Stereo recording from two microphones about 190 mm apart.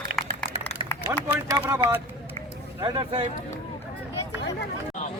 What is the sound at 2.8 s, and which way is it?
Speech, 25° right (ahead or behind).